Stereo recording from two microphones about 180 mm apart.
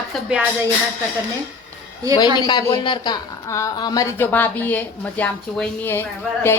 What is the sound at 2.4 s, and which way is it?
Speech, 25° left (ahead or behind).